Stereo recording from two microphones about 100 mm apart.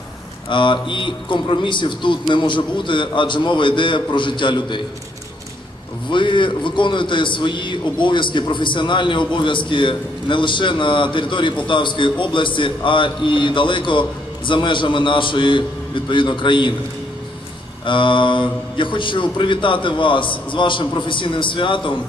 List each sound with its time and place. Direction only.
0.5 s a man's voice: 55° left (ahead or behind)
6.0 s a man's voice: 55° left (ahead or behind)
17.8 s a man's voice: 55° left (ahead or behind)